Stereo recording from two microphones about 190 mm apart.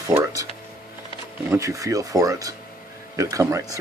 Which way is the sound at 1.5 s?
15° right (ahead or behind).